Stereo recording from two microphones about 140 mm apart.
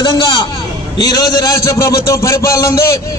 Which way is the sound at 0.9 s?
30° left (ahead or behind).